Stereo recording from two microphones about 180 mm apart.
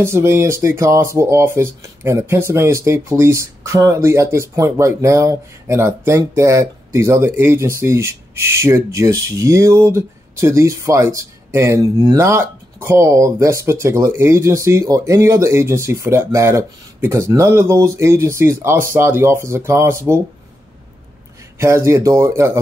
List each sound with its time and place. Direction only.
0.0 s speech: 15° right (ahead or behind)
21.5 s speech: 15° right (ahead or behind)